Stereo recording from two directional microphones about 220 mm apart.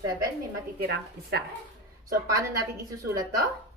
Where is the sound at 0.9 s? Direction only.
50° right (ahead or behind).